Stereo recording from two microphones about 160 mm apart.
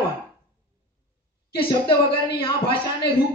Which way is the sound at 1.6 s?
30° left (ahead or behind).